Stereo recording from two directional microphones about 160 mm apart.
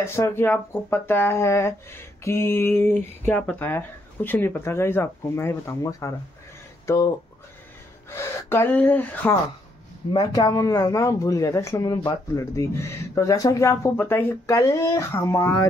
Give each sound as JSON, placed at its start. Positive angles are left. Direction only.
{"t": 0.0, "sound": "speech", "side_deg": 15}
{"t": 10.1, "sound": "speech", "side_deg": 25}